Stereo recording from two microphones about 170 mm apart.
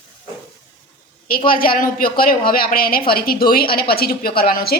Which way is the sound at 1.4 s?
60° left (ahead or behind).